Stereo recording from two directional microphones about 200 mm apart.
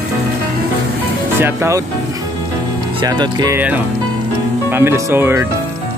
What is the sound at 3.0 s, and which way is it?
Speech, 20° right (ahead or behind).